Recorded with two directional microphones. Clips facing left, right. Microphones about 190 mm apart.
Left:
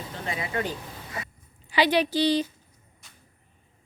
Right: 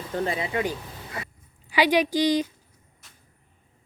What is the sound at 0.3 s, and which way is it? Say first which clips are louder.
Speech: left 2 dB; 25° right (ahead or behind).